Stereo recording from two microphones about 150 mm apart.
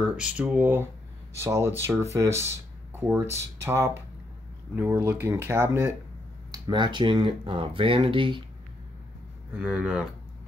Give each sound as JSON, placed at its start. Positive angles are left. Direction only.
{"t": 0.0, "sound": "speech", "side_deg": -5}
{"t": 6.5, "sound": "speech", "side_deg": -30}
{"t": 9.5, "sound": "speech", "side_deg": -10}